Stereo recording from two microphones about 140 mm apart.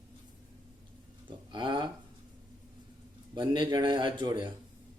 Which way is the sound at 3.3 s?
35° right (ahead or behind).